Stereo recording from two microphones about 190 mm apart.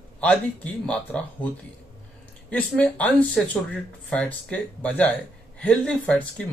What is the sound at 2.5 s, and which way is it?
Speech, 5° left (ahead or behind).